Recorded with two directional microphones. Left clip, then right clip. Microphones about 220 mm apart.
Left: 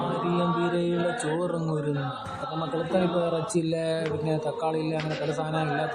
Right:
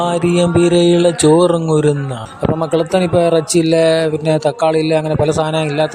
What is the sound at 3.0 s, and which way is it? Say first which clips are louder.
Speech: right 12 dB; 45° right (ahead or behind).